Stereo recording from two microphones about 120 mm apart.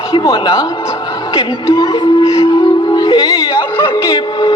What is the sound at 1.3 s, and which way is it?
Music, 45° left (ahead or behind).